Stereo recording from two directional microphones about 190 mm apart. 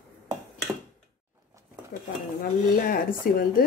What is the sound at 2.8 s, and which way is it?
Speech, 50° left (ahead or behind).